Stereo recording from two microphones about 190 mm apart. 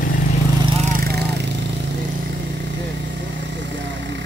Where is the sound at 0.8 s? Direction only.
55° right (ahead or behind).